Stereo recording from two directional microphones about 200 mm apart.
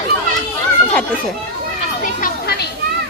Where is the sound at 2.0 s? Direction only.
45° left (ahead or behind).